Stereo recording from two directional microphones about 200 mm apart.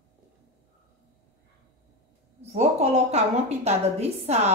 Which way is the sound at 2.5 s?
35° right (ahead or behind).